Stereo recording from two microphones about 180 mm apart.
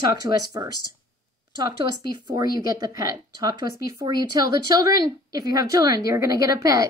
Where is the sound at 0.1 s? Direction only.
20° right (ahead or behind).